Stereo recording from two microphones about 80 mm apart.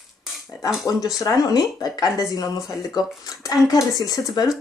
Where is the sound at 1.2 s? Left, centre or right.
Left.